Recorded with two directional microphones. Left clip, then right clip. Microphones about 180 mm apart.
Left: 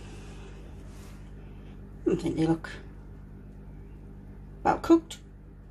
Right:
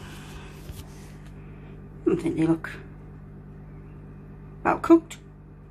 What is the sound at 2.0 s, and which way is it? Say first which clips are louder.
Speech: right 3 dB; 5° left (ahead or behind).